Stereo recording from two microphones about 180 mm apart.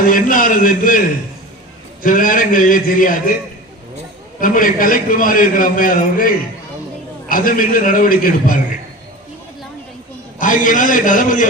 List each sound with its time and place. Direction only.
0.0 s a man's voice: 50° left (ahead or behind)
2.0 s a man's voice: 50° left (ahead or behind)
4.4 s a man's voice: 50° left (ahead or behind)
10.4 s a man's voice: 45° left (ahead or behind)